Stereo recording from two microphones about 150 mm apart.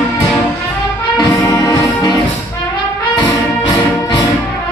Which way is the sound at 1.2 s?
20° left (ahead or behind).